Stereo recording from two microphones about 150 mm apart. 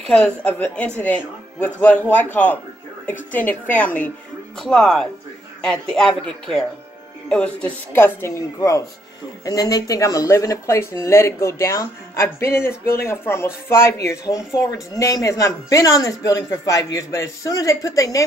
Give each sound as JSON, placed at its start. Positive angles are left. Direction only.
{"t": 0.0, "sound": "speech", "side_deg": 5}